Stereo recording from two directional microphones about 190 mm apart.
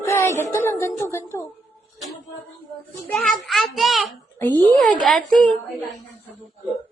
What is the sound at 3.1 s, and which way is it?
A woman's voice, centre (ahead or behind).